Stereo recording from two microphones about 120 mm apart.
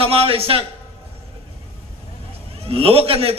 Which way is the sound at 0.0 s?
50° right (ahead or behind).